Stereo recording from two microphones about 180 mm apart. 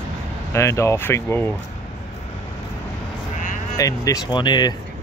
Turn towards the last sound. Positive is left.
turn(degrees=25)  # may be behind; listen again after turning